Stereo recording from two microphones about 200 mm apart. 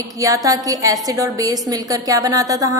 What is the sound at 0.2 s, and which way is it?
A woman's voice, 15° right (ahead or behind).